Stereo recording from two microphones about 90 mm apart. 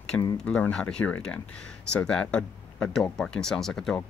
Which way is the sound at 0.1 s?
20° left (ahead or behind).